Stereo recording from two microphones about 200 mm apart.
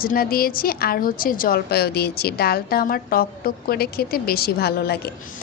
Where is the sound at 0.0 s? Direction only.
45° left (ahead or behind).